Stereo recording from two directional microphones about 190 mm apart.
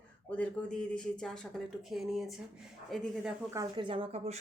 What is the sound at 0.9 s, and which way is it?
Speech, 5° left (ahead or behind).